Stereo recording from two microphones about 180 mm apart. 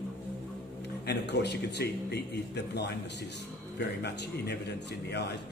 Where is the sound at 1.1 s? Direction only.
70° left (ahead or behind).